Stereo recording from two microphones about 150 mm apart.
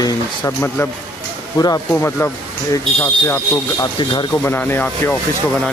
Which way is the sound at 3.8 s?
30° left (ahead or behind).